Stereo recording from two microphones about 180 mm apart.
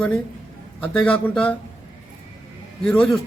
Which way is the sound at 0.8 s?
5° left (ahead or behind).